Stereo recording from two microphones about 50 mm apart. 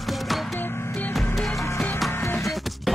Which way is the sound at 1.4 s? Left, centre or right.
Centre.